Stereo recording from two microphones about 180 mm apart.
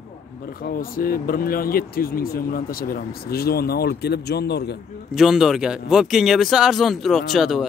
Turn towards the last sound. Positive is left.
turn(degrees=0)  # may be behind; listen again after turning